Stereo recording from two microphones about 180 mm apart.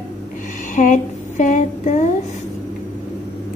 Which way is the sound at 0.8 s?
45° left (ahead or behind).